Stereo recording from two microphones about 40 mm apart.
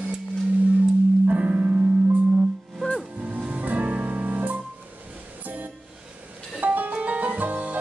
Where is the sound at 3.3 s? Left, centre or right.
Right.